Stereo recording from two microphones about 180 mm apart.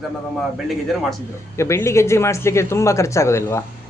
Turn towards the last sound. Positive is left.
turn(degrees=15)  # may be behind; listen again after turning